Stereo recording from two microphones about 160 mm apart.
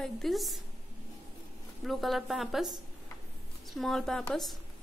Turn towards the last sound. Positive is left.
turn(degrees=0)  # may be behind; listen again after turning